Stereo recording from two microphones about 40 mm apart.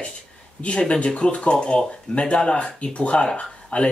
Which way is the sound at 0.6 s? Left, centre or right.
Left.